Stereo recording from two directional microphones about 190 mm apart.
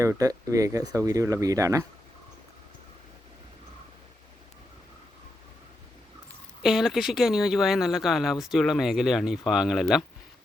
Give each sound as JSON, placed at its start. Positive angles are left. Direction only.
{"t": 0.0, "sound": "speech", "side_deg": -15}
{"t": 6.6, "sound": "speech", "side_deg": 0}